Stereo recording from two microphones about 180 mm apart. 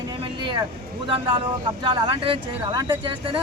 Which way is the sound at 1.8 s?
25° right (ahead or behind).